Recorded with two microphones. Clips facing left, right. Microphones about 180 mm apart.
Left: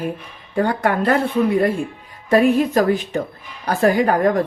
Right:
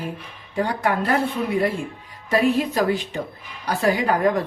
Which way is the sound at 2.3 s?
50° left (ahead or behind).